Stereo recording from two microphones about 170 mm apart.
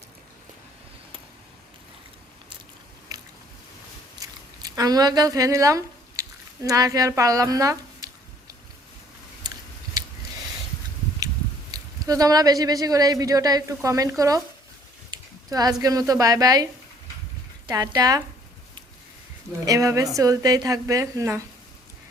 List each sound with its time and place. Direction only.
3.1 s biting: 20° right (ahead or behind)
4.2 s a sound: 20° right (ahead or behind)
6.6 s speech: 20° right (ahead or behind)
11.7 s a man's voice: 20° right (ahead or behind)
17.7 s a man's voice: 20° right (ahead or behind)
19.6 s a man's voice: 20° right (ahead or behind)